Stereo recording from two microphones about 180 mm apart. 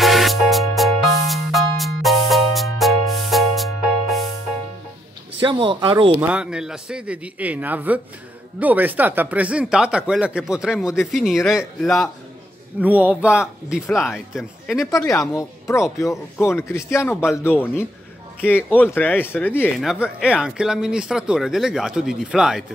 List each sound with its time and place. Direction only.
0.0 s music: centre (ahead or behind)
5.4 s speech: 25° right (ahead or behind)
6.2 s a man's voice: 5° right (ahead or behind)
14.9 s speech: 20° left (ahead or behind)
19.8 s speech: 5° right (ahead or behind)